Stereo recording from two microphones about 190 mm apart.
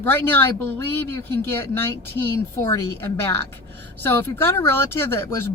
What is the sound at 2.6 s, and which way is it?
Speech, 15° left (ahead or behind).